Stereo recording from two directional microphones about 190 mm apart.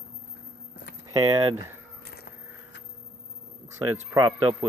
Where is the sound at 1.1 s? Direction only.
15° right (ahead or behind).